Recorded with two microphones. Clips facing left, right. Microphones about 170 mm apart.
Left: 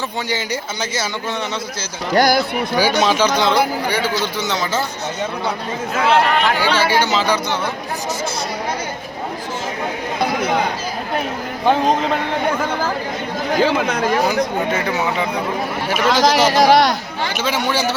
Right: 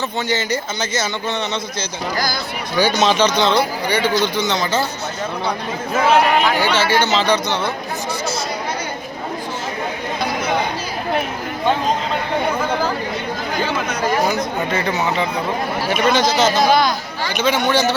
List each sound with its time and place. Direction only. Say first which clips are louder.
0.3 s speech: right 2 dB; 10° left (ahead or behind)
2.1 s speech: left 11 dB; 70° left (ahead or behind)
2.7 s speech: right 1 dB; 10° left (ahead or behind)
6.6 s speech: even; 10° left (ahead or behind)
14.3 s speech: left 2 dB; 10° left (ahead or behind)
16.0 s speech: left 2 dB; 90° left
16.5 s speech: left 2 dB; 80° left
17.3 s a man's voice: right 4 dB; 5° left (ahead or behind)